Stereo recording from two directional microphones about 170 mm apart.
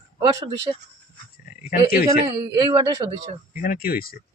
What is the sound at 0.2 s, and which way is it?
Speech, 25° right (ahead or behind).